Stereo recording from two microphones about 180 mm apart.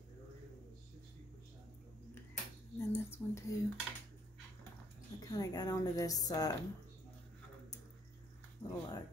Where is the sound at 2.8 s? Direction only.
15° left (ahead or behind).